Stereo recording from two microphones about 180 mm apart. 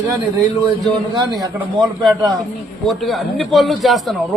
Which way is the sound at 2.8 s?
Centre (ahead or behind).